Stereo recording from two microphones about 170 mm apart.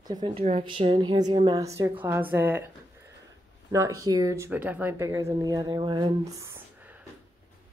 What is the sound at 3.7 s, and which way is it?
Speech, 20° right (ahead or behind).